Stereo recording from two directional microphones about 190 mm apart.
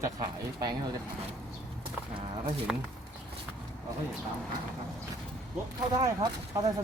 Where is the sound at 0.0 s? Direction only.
20° right (ahead or behind).